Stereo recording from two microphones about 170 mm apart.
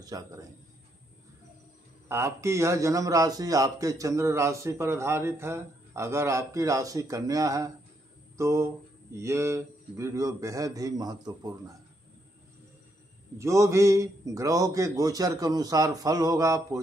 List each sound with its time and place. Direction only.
0.1 s a man's voice: 20° right (ahead or behind)
2.0 s a man's voice: 15° right (ahead or behind)
13.4 s a man's voice: 15° right (ahead or behind)